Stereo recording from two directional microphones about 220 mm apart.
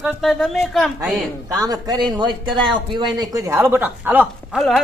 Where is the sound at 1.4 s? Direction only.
15° right (ahead or behind).